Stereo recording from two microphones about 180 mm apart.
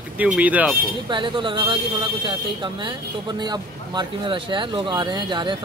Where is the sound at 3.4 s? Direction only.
25° right (ahead or behind).